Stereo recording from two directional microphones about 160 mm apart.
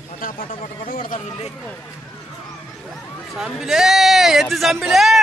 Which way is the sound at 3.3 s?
5° right (ahead or behind).